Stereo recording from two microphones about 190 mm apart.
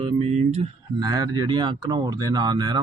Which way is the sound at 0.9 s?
20° right (ahead or behind).